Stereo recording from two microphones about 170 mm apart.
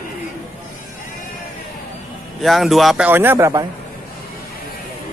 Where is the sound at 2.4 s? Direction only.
Centre (ahead or behind).